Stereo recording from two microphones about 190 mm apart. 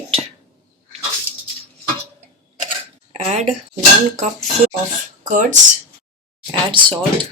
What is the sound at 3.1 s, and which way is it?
Speech, 35° right (ahead or behind).